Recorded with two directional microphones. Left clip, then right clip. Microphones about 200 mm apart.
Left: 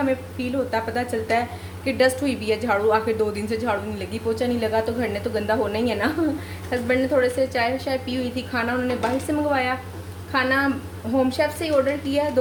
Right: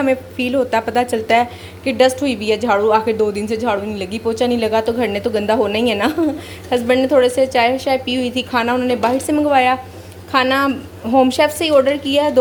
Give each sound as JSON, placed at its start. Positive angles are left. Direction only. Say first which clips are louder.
{"t": 0.0, "sound": "a woman's voice", "louder": "right 7 dB", "side_deg": -35}